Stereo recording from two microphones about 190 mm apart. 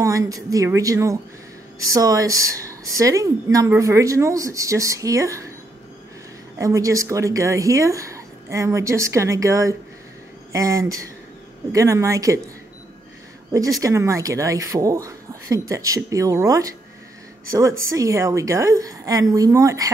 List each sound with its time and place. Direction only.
0.0 s speech: 15° right (ahead or behind)
6.6 s speech: 15° right (ahead or behind)
13.7 s speech: 15° right (ahead or behind)